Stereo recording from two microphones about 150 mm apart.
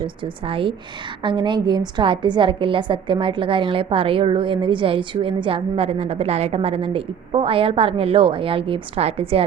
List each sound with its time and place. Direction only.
0.2 s a woman's voice: 35° right (ahead or behind)